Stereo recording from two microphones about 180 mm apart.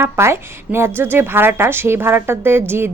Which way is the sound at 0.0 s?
15° right (ahead or behind).